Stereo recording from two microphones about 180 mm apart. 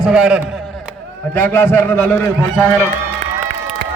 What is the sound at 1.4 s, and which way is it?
A man's voice, 10° left (ahead or behind).